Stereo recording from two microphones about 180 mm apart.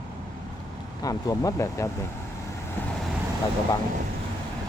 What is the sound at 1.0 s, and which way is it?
Speech, 20° left (ahead or behind).